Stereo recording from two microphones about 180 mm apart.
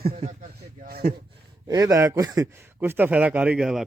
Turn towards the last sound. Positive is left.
turn(degrees=0)  # may be behind; listen again after turning